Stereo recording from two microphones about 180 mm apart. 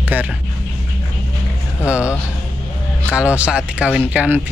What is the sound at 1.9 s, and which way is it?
Speech, 5° right (ahead or behind).